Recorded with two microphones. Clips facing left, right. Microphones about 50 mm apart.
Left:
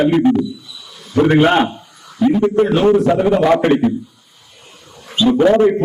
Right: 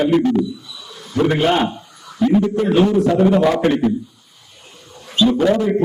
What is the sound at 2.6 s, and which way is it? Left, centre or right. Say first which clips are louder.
A man's voice: left 4 dB; left.